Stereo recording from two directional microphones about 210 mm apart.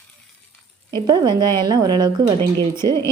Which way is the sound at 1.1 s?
20° right (ahead or behind).